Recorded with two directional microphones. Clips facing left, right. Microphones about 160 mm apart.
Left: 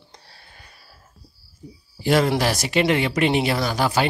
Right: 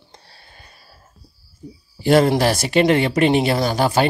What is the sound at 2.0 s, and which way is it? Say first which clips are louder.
A man's voice: right 4 dB; 40° right (ahead or behind).